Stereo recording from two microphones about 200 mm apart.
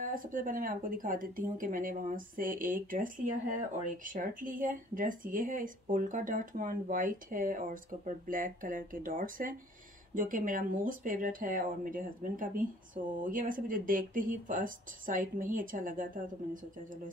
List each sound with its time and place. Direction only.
0.0 s speech: 45° right (ahead or behind)